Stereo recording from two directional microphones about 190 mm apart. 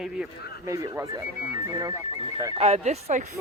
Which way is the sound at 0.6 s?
15° right (ahead or behind).